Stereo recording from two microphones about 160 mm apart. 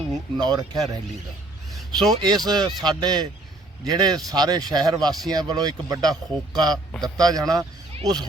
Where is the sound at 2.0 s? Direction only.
25° right (ahead or behind).